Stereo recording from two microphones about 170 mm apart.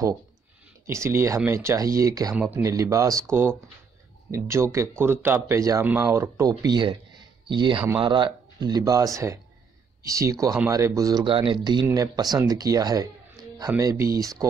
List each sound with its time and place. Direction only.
0.8 s speech: 15° right (ahead or behind)